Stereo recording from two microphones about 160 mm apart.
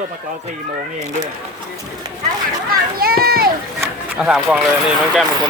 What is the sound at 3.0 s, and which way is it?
Speech, 70° right (ahead or behind).